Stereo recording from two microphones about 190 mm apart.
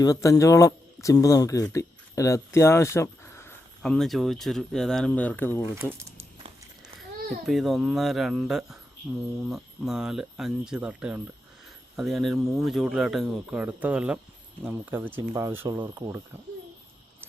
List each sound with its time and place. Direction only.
0.0 s a man's voice: 15° left (ahead or behind)
3.8 s speech: centre (ahead or behind)
7.4 s speech: centre (ahead or behind); by 16.1 s 20° right (ahead or behind)